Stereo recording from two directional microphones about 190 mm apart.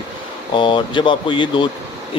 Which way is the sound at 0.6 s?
25° left (ahead or behind).